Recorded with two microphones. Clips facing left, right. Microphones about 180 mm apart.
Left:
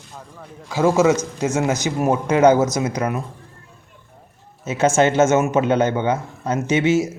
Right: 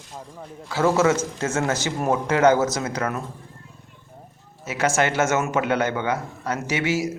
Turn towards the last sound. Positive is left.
turn(degrees=20)  # may be behind; listen again after turning